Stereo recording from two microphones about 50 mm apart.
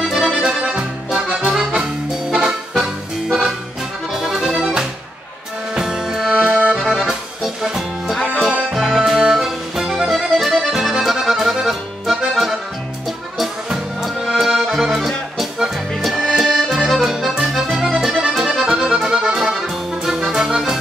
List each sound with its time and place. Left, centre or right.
0.0 s accordion: centre
2.3 s music: centre
4.1 s accordion: centre
4.5 s music: centre
5.8 s accordion: centre
7.1 s music: centre
10.3 s accordion: centre
14.4 s accordion: centre
20.1 s music: centre